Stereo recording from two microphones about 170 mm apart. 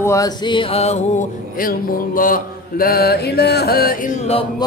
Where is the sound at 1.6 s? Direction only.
55° left (ahead or behind).